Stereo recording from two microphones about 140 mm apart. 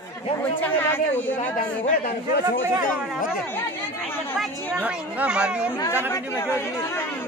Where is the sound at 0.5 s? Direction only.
15° left (ahead or behind).